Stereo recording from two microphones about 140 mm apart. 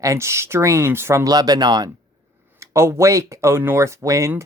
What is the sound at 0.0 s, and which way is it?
Speech, 20° right (ahead or behind).